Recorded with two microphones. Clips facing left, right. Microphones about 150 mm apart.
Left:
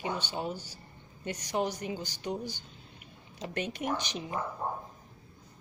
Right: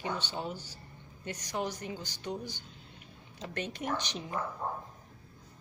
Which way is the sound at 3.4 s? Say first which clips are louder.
Left 3 dB; 15° left (ahead or behind).